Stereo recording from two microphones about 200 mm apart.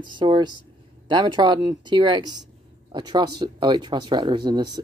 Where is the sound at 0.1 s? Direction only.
25° right (ahead or behind).